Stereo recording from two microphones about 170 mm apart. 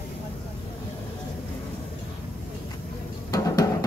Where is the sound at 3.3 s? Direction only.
20° left (ahead or behind).